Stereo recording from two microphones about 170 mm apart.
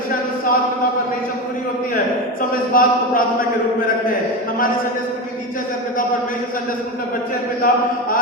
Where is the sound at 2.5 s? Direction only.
55° left (ahead or behind).